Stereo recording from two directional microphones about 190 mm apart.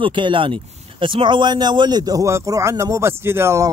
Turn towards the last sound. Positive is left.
turn(degrees=-15)  # may be behind; listen again after turning